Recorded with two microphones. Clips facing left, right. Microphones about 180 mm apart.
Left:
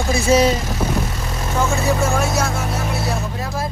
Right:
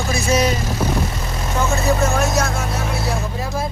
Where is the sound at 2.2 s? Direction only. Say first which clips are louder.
Right 1 dB; 10° left (ahead or behind).